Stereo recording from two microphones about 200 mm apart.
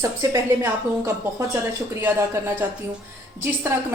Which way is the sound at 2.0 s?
10° right (ahead or behind).